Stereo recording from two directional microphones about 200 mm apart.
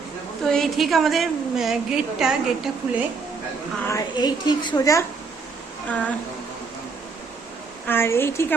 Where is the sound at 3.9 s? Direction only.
20° left (ahead or behind).